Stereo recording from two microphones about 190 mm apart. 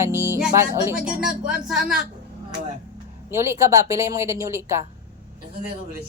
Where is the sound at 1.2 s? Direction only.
5° right (ahead or behind).